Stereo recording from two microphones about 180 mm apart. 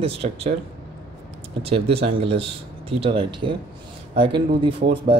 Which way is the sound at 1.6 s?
30° right (ahead or behind).